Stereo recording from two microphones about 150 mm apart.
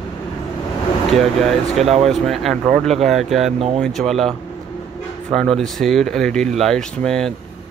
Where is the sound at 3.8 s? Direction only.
Centre (ahead or behind).